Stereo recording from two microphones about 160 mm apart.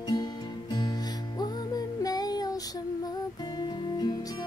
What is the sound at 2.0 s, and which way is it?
Child singing, 25° left (ahead or behind).